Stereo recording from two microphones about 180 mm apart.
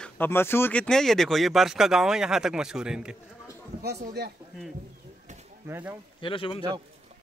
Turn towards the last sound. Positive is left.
turn(degrees=30)  # may be behind; listen again after turning